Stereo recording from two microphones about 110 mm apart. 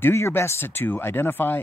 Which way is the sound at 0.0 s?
20° left (ahead or behind).